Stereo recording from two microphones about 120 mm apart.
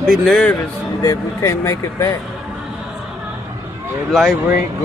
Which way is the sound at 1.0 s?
25° left (ahead or behind).